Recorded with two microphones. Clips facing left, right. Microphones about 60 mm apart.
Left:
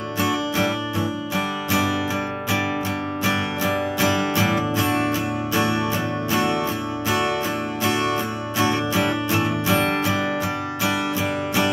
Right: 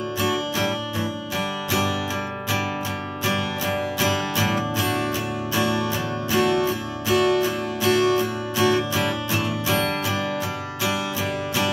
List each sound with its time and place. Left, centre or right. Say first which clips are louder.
3.3 s music: left 1 dB; centre
4.4 s music: left 2 dB; left
8.5 s music: even; centre